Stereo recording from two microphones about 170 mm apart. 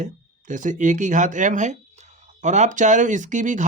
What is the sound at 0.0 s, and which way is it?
Speech, 45° right (ahead or behind).